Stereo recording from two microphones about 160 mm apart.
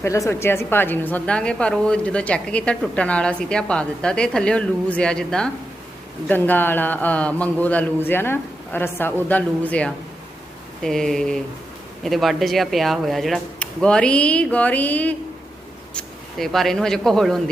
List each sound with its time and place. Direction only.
0.0 s a woman's voice: 20° left (ahead or behind); by 17.4 s centre (ahead or behind)